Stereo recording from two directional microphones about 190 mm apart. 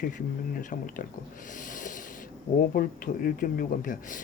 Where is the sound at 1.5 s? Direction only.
45° left (ahead or behind).